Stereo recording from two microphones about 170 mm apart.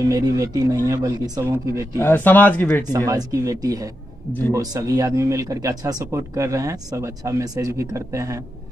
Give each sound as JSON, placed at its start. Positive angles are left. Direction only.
{"t": 0.1, "sound": "speech", "side_deg": -20}
{"t": 2.0, "sound": "speech", "side_deg": 10}
{"t": 3.1, "sound": "speech", "side_deg": -20}